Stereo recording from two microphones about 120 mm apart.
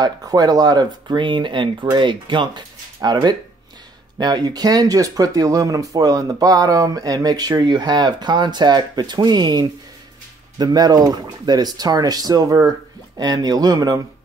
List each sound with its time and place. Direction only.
0.0 s speech: 30° right (ahead or behind)